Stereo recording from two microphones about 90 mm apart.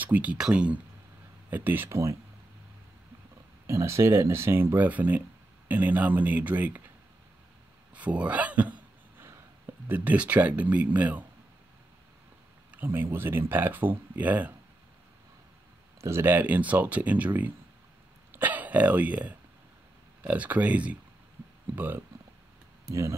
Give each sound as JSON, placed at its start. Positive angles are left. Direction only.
{"t": 0.0, "sound": "speech", "side_deg": -20}
{"t": 3.6, "sound": "speech", "side_deg": -35}
{"t": 7.9, "sound": "speech", "side_deg": -15}
{"t": 9.8, "sound": "speech", "side_deg": -20}
{"t": 12.7, "sound": "speech", "side_deg": -25}
{"t": 16.0, "sound": "speech", "side_deg": -30}
{"t": 22.8, "sound": "speech", "side_deg": -35}